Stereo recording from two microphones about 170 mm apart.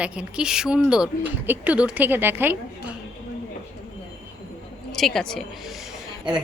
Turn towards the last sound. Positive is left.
turn(degrees=-5)  # may be behind; listen again after turning